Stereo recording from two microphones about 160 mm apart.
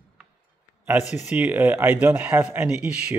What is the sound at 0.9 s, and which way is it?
Speech, 10° right (ahead or behind).